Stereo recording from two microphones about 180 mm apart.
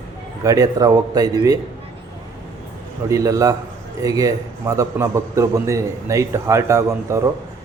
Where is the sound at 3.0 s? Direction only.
20° right (ahead or behind).